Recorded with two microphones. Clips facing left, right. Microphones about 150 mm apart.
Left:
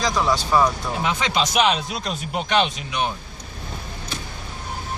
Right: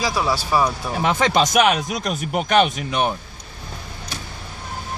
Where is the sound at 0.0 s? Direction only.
5° right (ahead or behind).